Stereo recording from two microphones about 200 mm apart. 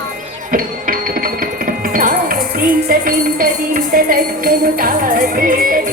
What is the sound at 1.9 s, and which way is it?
Music, 45° right (ahead or behind).